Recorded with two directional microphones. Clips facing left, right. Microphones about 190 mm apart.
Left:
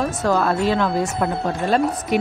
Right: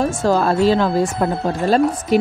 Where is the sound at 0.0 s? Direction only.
30° right (ahead or behind).